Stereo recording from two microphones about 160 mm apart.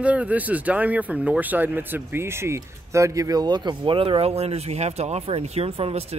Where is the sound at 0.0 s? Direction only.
10° right (ahead or behind).